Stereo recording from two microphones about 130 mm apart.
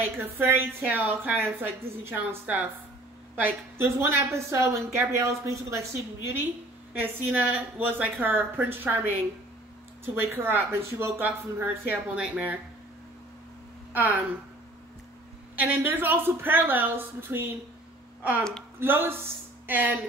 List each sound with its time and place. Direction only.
0.2 s a woman's voice: 15° right (ahead or behind)
10.0 s speech: 15° right (ahead or behind)
13.9 s speech: 15° right (ahead or behind)
15.6 s speech: 15° right (ahead or behind)
18.8 s speech: 15° right (ahead or behind)